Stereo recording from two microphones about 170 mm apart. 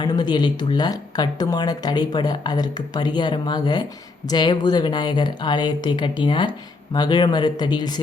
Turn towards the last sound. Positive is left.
turn(degrees=25)  # may be behind; listen again after turning